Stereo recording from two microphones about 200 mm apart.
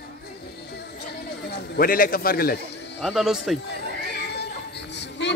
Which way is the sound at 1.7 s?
45° left (ahead or behind).